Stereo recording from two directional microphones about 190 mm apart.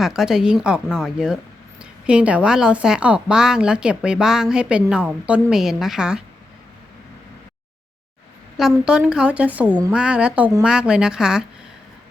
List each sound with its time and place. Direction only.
0.0 s a woman's voice: centre (ahead or behind)
8.5 s a woman's voice: 5° right (ahead or behind)